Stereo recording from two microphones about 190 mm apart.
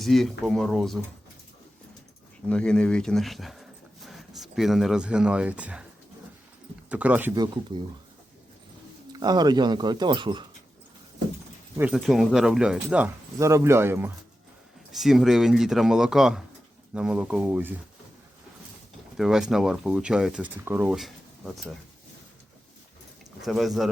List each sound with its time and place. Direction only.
0.0 s speech: centre (ahead or behind)
2.5 s speech: 5° left (ahead or behind)
6.9 s speech: 10° right (ahead or behind)
7.3 s speech: 20° right (ahead or behind)
9.1 s speech: 20° right (ahead or behind)
11.8 s speech: 5° right (ahead or behind)
14.9 s speech: centre (ahead or behind)
19.1 s speech: 5° right (ahead or behind)
23.4 s speech: centre (ahead or behind)